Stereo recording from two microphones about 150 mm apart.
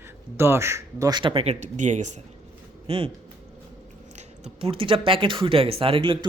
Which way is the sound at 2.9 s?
35° right (ahead or behind).